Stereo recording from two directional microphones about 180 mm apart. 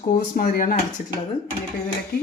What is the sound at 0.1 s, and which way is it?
Speech, 50° left (ahead or behind).